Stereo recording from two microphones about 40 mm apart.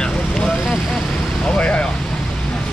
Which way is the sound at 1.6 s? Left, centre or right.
Left.